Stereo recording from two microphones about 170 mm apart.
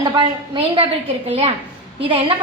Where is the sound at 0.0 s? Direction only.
30° right (ahead or behind).